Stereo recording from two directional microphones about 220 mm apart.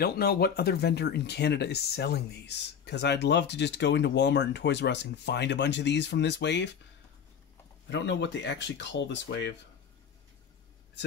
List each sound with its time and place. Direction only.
0.0 s speech: 45° left (ahead or behind)
7.9 s speech: 55° left (ahead or behind)